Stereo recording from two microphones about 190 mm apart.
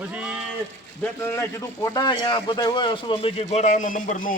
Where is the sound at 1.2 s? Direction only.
15° left (ahead or behind).